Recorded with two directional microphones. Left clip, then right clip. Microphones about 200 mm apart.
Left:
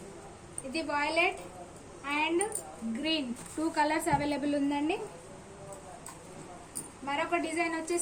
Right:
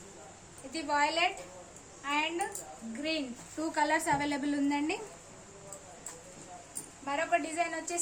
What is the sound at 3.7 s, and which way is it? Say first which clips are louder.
A woman's voice: even; 40° right (ahead or behind).